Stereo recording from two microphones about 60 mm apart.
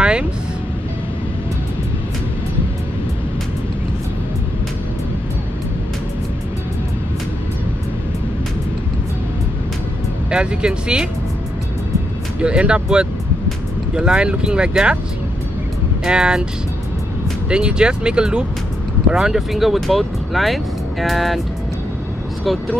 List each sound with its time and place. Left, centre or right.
0.0 s music: centre
10.3 s speech: centre
12.4 s speech: centre
16.1 s speech: centre
17.5 s speech: centre
22.4 s speech: centre